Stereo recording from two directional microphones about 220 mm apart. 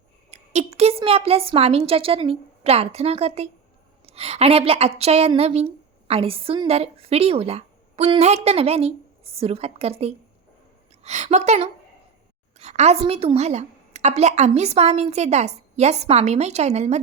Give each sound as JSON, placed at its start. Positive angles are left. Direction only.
{"t": 0.3, "sound": "a woman's voice", "side_deg": -30}